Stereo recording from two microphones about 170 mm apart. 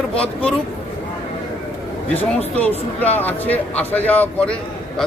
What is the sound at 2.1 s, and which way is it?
Speech, 35° left (ahead or behind).